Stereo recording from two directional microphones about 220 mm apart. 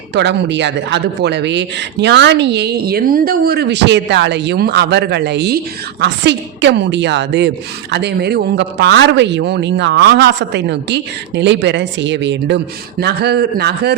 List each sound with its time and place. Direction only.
0.1 s a woman's voice: 50° right (ahead or behind)